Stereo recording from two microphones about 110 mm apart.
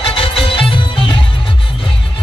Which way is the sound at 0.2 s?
55° left (ahead or behind).